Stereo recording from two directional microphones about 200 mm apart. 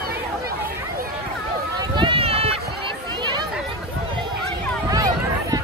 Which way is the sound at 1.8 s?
25° right (ahead or behind).